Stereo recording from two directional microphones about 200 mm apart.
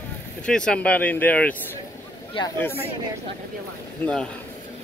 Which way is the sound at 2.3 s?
20° left (ahead or behind).